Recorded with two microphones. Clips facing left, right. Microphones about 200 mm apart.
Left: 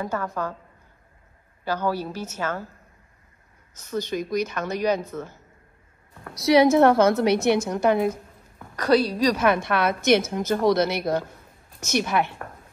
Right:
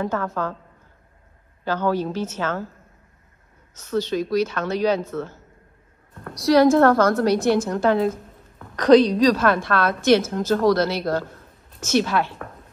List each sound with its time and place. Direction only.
0.0 s a woman's voice: 10° left (ahead or behind)
1.6 s a woman's voice: 10° left (ahead or behind)
3.7 s a woman's voice: 15° left (ahead or behind)
6.6 s speech: 20° left (ahead or behind)
7.1 s a woman's voice: centre (ahead or behind)
7.7 s a woman's voice: 15° left (ahead or behind)